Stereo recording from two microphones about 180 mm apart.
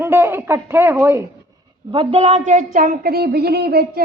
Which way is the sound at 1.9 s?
30° right (ahead or behind).